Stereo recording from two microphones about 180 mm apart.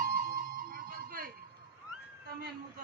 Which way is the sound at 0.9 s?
55° right (ahead or behind).